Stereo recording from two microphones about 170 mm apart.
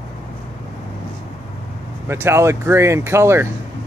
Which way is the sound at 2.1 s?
15° right (ahead or behind).